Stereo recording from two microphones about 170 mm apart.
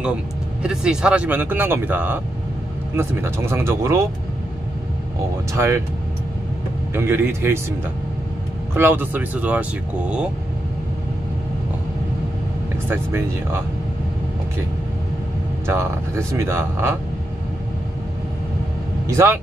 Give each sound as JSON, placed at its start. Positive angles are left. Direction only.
{"t": 0.0, "sound": "speech", "side_deg": -5}
{"t": 5.5, "sound": "speech", "side_deg": -15}
{"t": 6.9, "sound": "speech", "side_deg": -15}
{"t": 8.7, "sound": "speech", "side_deg": -10}
{"t": 12.9, "sound": "speech", "side_deg": -15}
{"t": 15.6, "sound": "speech", "side_deg": -15}
{"t": 19.0, "sound": "speech", "side_deg": -15}